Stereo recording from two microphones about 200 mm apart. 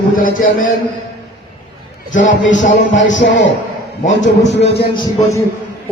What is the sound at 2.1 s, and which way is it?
Speech, 40° left (ahead or behind).